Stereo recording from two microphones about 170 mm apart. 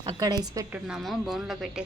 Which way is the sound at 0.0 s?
25° right (ahead or behind).